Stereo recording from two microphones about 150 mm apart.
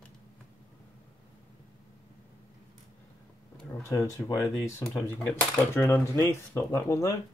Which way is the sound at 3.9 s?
20° left (ahead or behind).